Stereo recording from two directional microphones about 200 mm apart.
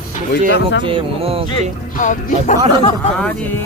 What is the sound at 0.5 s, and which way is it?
Speech, 60° left (ahead or behind).